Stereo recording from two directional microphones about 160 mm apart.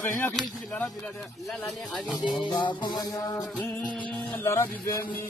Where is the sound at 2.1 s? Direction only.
25° left (ahead or behind).